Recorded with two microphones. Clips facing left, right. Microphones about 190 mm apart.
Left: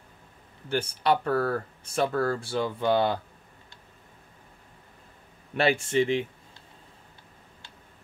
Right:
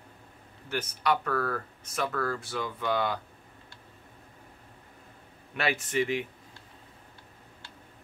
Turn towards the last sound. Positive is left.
turn(degrees=25)  # may be behind; listen again after turning